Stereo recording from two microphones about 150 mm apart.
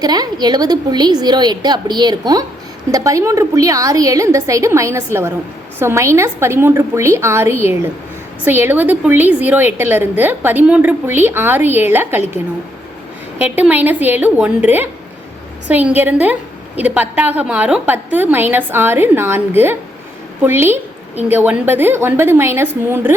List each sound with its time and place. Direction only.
0.0 s a woman's voice: 25° right (ahead or behind)
13.4 s a woman's voice: 10° right (ahead or behind)